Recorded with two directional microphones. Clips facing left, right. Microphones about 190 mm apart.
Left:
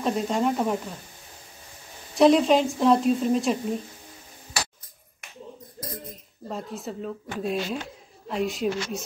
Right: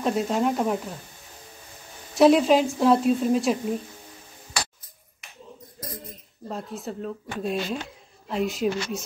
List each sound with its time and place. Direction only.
0.0 s speech: centre (ahead or behind)
2.1 s speech: centre (ahead or behind)
6.4 s speech: centre (ahead or behind)